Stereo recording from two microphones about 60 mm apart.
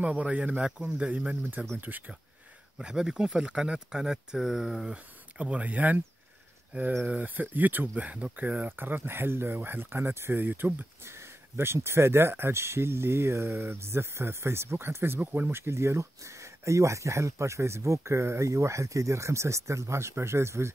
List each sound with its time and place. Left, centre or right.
0.0 s speech: right
1.4 s speech: right
2.8 s speech: centre
4.9 s speech: right
11.1 s speech: right
15.1 s speech: right
15.6 s speech: right